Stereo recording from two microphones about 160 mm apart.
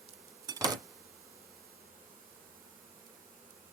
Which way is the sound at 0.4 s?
25° right (ahead or behind).